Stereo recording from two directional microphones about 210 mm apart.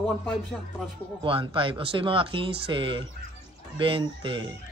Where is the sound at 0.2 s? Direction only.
Centre (ahead or behind).